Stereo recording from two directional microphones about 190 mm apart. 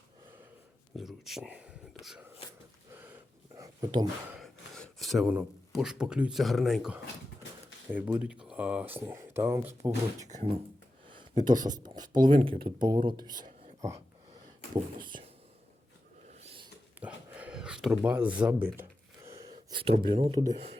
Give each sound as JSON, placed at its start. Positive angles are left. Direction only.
{"t": 0.9, "sound": "speech", "side_deg": 0}
{"t": 3.5, "sound": "a sound", "side_deg": -20}
{"t": 4.4, "sound": "speech", "side_deg": 0}
{"t": 10.2, "sound": "speech", "side_deg": -40}
{"t": 11.4, "sound": "speech", "side_deg": -20}
{"t": 13.3, "sound": "whispering", "side_deg": -40}
{"t": 14.9, "sound": "speech", "side_deg": -25}
{"t": 16.4, "sound": "a sound", "side_deg": -30}
{"t": 17.0, "sound": "a sound", "side_deg": -10}
{"t": 20.1, "sound": "speech", "side_deg": -30}